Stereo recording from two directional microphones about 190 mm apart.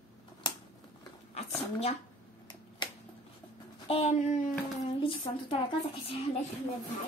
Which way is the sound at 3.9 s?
35° left (ahead or behind).